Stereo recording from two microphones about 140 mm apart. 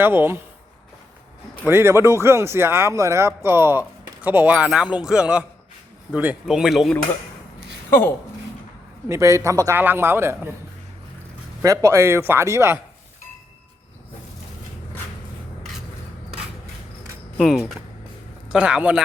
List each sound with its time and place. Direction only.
0.0 s speech: 15° right (ahead or behind)
1.6 s speech: 15° right (ahead or behind); by 6.9 s centre (ahead or behind)
7.9 s speech: 15° left (ahead or behind)
9.0 s a man's voice: 20° right (ahead or behind)
11.6 s a man's voice: 20° right (ahead or behind)
17.3 s speech: centre (ahead or behind)